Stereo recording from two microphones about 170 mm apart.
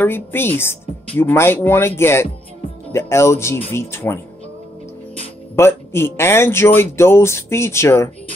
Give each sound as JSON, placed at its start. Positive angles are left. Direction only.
{"t": 0.0, "sound": "speech", "side_deg": 15}
{"t": 5.6, "sound": "speech", "side_deg": 15}